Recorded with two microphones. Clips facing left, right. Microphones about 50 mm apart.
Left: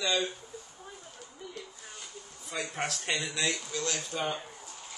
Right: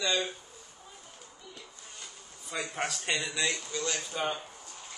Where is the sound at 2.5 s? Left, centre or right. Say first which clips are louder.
Even; centre.